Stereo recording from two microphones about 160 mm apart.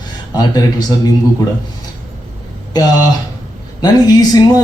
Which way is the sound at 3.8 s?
25° left (ahead or behind).